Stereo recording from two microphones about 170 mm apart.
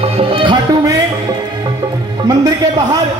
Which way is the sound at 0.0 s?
30° right (ahead or behind).